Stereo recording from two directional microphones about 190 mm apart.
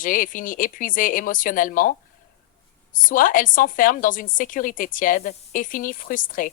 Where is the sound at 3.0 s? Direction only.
45° left (ahead or behind).